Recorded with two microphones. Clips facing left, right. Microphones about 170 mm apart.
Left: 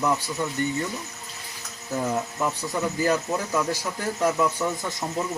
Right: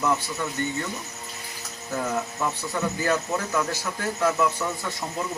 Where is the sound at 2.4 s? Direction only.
15° left (ahead or behind).